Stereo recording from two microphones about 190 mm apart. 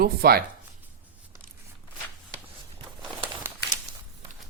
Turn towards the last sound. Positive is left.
turn(degrees=-10)  # may be behind; listen again after turning